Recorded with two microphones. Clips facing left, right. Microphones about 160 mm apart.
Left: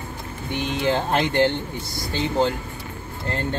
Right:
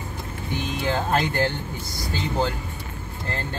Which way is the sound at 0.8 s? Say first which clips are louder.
Left 2 dB; 25° left (ahead or behind).